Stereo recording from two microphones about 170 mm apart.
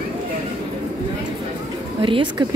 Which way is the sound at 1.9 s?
30° right (ahead or behind).